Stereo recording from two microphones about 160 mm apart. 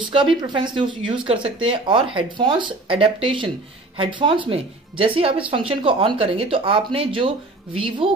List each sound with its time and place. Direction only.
0.1 s speech: 30° right (ahead or behind)